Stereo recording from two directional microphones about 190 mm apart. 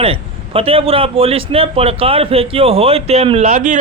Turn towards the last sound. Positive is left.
turn(degrees=-40)  # may be behind; listen again after turning